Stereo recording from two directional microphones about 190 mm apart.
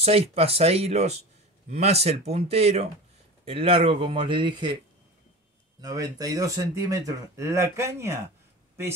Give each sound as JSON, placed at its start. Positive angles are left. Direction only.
{"t": 0.0, "sound": "speech", "side_deg": -30}
{"t": 5.8, "sound": "speech", "side_deg": -20}